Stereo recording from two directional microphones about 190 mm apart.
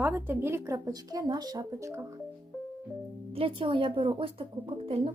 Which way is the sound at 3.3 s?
30° right (ahead or behind).